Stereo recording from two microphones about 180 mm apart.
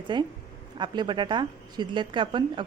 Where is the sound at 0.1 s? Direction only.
25° right (ahead or behind).